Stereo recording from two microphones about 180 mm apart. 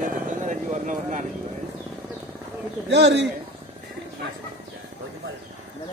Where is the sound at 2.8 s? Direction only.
75° right (ahead or behind).